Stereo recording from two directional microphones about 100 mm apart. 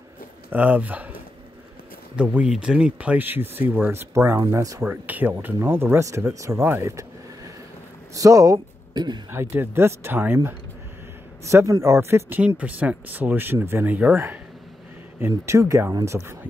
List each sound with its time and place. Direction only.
0.5 s speech: 15° right (ahead or behind)
2.1 s speech: 10° right (ahead or behind); by 4.8 s 30° right (ahead or behind)
4.8 s speech: 15° right (ahead or behind); by 8.5 s 35° right (ahead or behind)
8.9 s speech: 50° right (ahead or behind)
9.3 s speech: 20° right (ahead or behind)
11.4 s speech: 30° right (ahead or behind)